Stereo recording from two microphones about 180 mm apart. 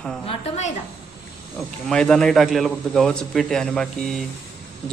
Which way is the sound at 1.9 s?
5° left (ahead or behind).